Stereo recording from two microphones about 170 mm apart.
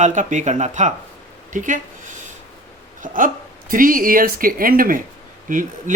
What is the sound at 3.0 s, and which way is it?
Speech, 50° right (ahead or behind).